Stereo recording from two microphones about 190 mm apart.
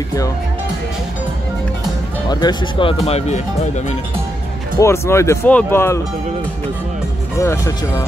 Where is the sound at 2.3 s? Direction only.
20° left (ahead or behind); by 3.7 s 35° left (ahead or behind).